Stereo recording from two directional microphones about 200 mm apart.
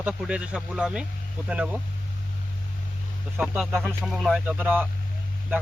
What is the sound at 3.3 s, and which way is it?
A man's voice, 5° right (ahead or behind).